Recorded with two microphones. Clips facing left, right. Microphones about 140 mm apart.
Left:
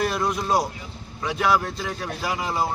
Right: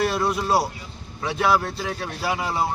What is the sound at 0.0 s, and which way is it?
Speech, 5° right (ahead or behind).